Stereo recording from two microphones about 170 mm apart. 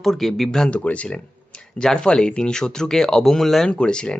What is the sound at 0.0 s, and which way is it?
Speech, centre (ahead or behind).